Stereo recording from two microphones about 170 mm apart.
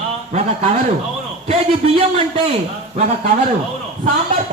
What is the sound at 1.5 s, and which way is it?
A man's voice, 35° right (ahead or behind).